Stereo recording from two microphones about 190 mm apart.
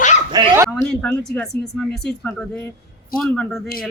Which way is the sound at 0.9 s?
5° left (ahead or behind).